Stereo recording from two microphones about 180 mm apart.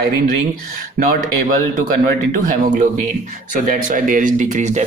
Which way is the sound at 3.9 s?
45° right (ahead or behind).